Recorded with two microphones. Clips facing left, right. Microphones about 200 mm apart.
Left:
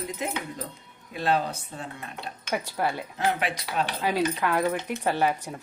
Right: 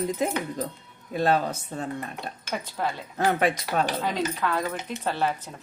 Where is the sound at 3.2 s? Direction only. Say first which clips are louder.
Right 5 dB; 45° right (ahead or behind).